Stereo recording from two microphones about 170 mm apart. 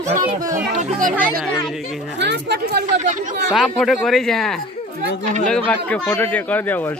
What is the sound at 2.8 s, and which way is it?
Speech, 45° right (ahead or behind).